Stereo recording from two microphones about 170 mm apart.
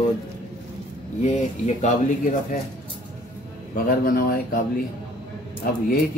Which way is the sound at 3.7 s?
60° left (ahead or behind).